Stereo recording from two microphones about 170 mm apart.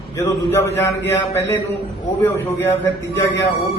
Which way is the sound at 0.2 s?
15° left (ahead or behind).